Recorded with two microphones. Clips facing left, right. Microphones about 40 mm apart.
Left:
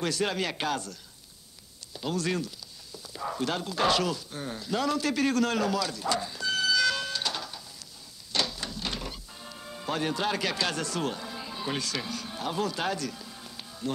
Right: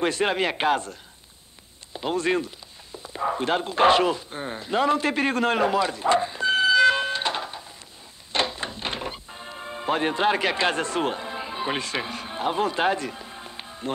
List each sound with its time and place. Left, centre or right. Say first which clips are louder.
0.0 s speech: right 6 dB; right
2.0 s speech: right 6 dB; right
8.3 s music: right 5 dB; right